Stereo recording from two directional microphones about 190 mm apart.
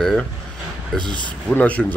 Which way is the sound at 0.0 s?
Centre (ahead or behind).